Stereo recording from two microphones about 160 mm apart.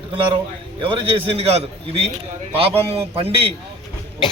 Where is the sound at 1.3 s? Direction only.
40° right (ahead or behind).